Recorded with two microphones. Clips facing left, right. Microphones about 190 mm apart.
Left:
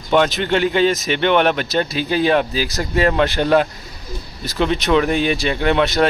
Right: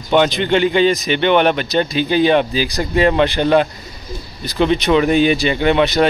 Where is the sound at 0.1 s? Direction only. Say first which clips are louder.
Right 2 dB; centre (ahead or behind).